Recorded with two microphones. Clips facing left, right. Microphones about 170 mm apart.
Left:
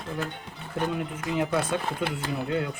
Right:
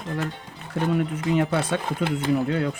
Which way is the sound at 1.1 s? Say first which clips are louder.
Right 4 dB; 70° right (ahead or behind).